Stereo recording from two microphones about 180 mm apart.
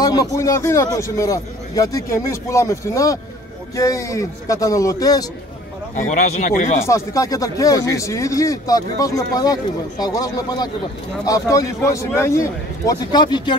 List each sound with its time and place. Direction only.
0.0 s a man's voice: 20° left (ahead or behind)
5.9 s speech: 40° left (ahead or behind)
6.8 s a man's voice: 20° left (ahead or behind)